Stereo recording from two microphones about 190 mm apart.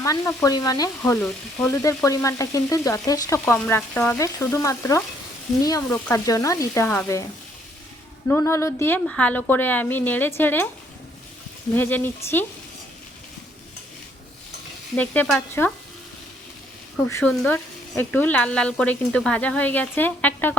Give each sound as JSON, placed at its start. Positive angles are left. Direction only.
{"t": 0.0, "sound": "speech", "side_deg": 15}
{"t": 8.3, "sound": "speech", "side_deg": 15}
{"t": 11.7, "sound": "speech", "side_deg": 10}
{"t": 14.9, "sound": "speech", "side_deg": 5}
{"t": 17.1, "sound": "speech", "side_deg": 10}